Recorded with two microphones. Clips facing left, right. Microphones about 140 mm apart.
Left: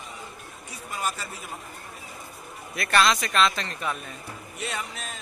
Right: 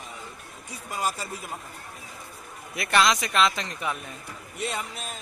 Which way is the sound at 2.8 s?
20° right (ahead or behind).